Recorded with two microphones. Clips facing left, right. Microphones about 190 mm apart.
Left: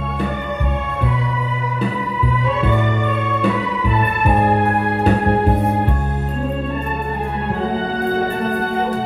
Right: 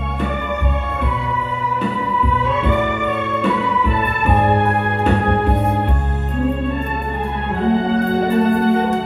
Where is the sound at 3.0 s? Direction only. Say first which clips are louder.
Even; 35° left (ahead or behind).